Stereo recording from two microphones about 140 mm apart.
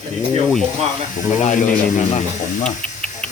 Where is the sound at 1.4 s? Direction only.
60° left (ahead or behind).